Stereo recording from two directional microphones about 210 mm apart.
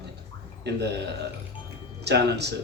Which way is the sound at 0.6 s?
55° right (ahead or behind).